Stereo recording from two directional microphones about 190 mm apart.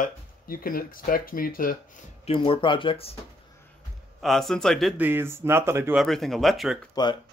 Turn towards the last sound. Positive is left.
turn(degrees=25)  # may be behind; listen again after turning